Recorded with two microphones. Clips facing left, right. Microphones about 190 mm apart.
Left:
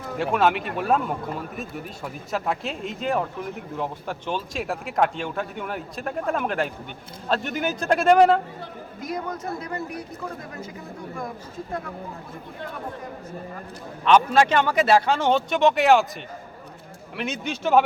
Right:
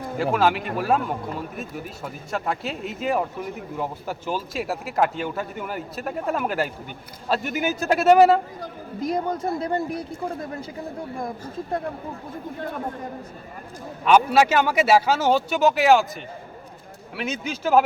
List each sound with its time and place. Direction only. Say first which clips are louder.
0.2 s speech: even; centre (ahead or behind)
9.0 s speech: right 6 dB; 30° right (ahead or behind)
14.0 s a man's voice: right 1 dB; 10° right (ahead or behind)
17.2 s speech: even; centre (ahead or behind)